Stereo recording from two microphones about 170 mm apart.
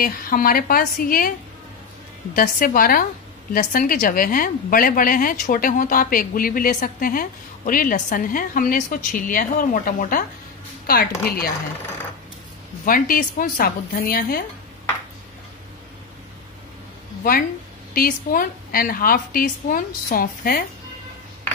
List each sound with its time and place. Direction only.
0.0 s a woman's voice: 55° left (ahead or behind)
2.3 s a woman's voice: 55° left (ahead or behind)
11.2 s a woman's voice: 60° left (ahead or behind)
12.8 s a woman's voice: 55° left (ahead or behind)
17.2 s a woman's voice: 60° left (ahead or behind)